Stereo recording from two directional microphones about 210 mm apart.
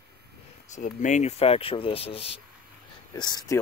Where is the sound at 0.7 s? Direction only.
35° left (ahead or behind).